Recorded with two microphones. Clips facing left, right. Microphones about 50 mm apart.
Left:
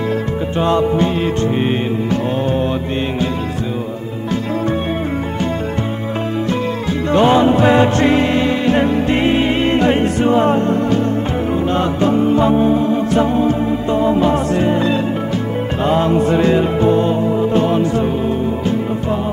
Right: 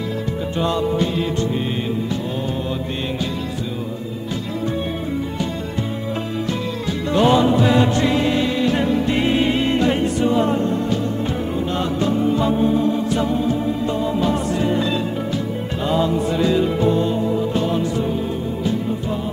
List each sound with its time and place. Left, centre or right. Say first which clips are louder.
0.6 s music: left 5 dB; left
7.1 s music: left 4 dB; left
15.8 s music: left 5 dB; left